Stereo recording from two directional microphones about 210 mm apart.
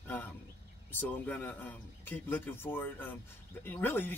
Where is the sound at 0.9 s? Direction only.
10° left (ahead or behind).